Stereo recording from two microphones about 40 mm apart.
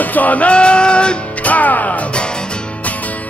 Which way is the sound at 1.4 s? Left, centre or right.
Left.